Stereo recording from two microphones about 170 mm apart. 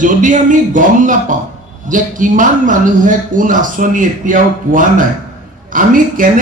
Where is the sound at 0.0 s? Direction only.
50° right (ahead or behind).